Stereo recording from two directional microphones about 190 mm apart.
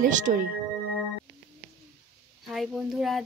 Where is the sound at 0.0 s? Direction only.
45° right (ahead or behind).